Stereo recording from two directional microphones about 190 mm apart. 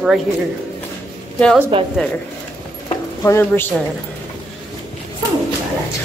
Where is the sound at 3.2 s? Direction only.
15° left (ahead or behind).